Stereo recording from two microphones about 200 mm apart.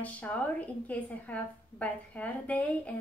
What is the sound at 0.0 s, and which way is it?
A woman's voice, 5° left (ahead or behind).